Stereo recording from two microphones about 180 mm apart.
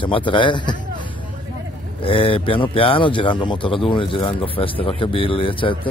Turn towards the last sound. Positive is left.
turn(degrees=30)  # may be behind; listen again after turning